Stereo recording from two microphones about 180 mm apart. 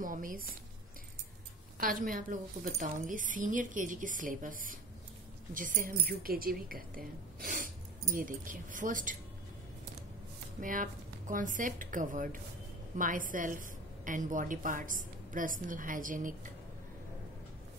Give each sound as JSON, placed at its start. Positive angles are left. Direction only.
{"t": 0.0, "sound": "speech", "side_deg": -50}
{"t": 1.8, "sound": "a woman's voice", "side_deg": -50}
{"t": 10.6, "sound": "a woman's voice", "side_deg": -50}